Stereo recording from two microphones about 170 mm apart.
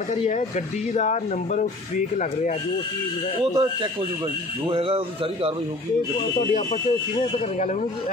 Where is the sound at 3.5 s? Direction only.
30° right (ahead or behind).